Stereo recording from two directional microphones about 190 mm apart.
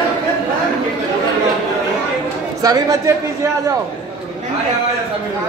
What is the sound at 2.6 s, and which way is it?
Speech, 20° right (ahead or behind).